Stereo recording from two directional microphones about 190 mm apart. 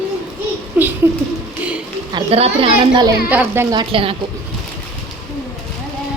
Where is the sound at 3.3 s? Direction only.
10° right (ahead or behind).